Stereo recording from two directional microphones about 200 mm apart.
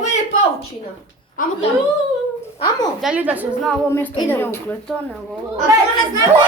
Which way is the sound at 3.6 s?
10° left (ahead or behind).